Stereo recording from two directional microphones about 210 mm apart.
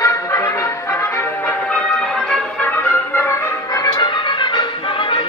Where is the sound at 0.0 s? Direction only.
15° left (ahead or behind).